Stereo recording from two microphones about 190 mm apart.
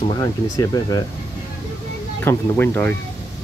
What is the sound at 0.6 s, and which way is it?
Speech, 20° left (ahead or behind).